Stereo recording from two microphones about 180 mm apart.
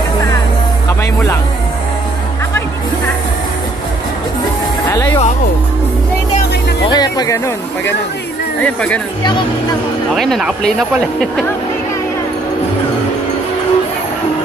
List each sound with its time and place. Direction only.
4.8 s music: 15° left (ahead or behind)
6.9 s music: 20° left (ahead or behind)
8.6 s speech: 5° left (ahead or behind)
10.1 s speech: centre (ahead or behind)